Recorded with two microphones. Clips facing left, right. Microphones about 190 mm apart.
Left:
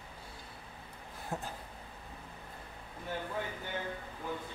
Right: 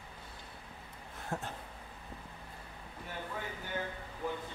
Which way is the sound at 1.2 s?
Centre (ahead or behind).